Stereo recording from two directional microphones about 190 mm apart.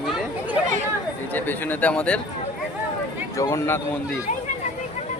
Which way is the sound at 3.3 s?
15° left (ahead or behind).